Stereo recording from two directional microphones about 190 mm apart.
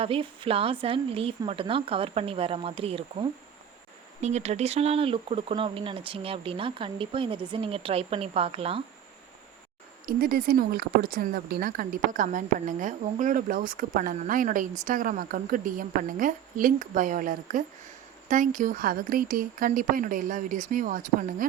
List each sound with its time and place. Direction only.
0.0 s a woman's voice: 30° right (ahead or behind)
10.1 s speech: 50° right (ahead or behind)